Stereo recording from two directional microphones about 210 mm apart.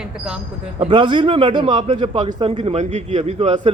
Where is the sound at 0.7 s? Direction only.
25° right (ahead or behind).